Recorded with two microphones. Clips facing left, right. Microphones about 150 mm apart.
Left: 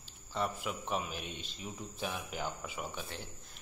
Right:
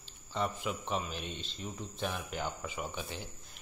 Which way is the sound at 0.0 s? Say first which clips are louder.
Right 1 dB; 5° left (ahead or behind).